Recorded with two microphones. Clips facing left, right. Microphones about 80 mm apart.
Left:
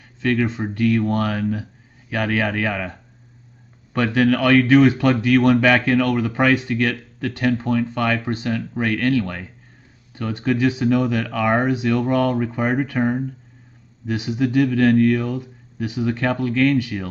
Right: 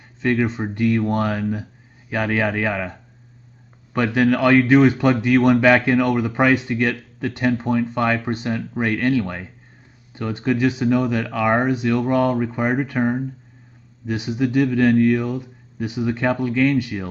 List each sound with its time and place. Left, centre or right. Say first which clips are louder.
0.2 s speech: even; centre